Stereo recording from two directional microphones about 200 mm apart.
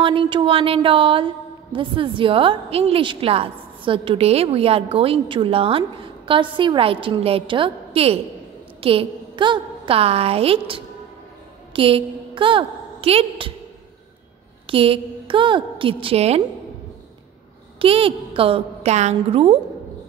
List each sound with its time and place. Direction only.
0.0 s a woman's voice: 25° right (ahead or behind)
14.7 s a woman's voice: 25° right (ahead or behind)
17.7 s a woman's voice: 30° right (ahead or behind)